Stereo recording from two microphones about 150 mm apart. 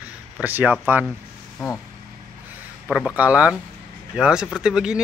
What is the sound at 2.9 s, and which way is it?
A man's voice, 5° right (ahead or behind).